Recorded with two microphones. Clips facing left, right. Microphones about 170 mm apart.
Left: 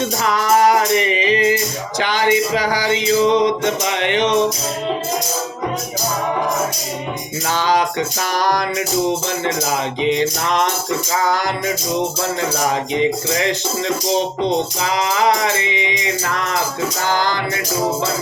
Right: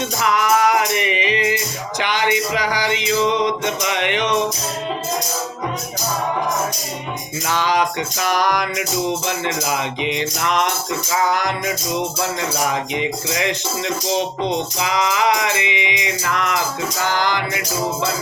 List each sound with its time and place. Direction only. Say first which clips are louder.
0.0 s music: left 1 dB; 35° left (ahead or behind)
7.4 s music: left 1 dB; 30° left (ahead or behind)